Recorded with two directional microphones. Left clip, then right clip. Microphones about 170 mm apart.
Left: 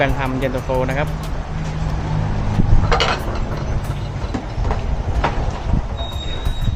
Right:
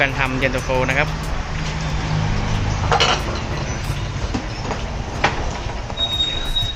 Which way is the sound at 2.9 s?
15° right (ahead or behind).